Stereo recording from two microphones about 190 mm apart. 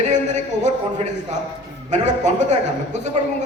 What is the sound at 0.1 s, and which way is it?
A man's voice, 40° right (ahead or behind).